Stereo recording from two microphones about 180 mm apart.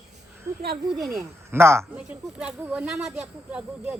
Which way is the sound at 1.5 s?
15° right (ahead or behind).